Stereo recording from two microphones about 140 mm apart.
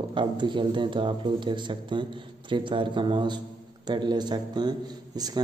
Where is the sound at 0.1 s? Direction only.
35° right (ahead or behind).